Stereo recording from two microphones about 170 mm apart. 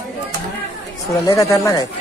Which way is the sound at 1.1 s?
20° left (ahead or behind).